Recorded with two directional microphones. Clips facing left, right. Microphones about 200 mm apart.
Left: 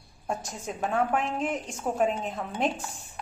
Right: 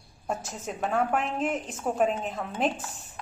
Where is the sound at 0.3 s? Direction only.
5° right (ahead or behind).